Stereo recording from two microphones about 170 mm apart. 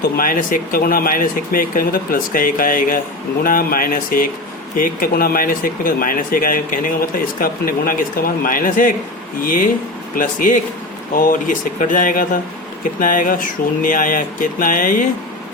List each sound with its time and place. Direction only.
0.2 s speech: 55° left (ahead or behind)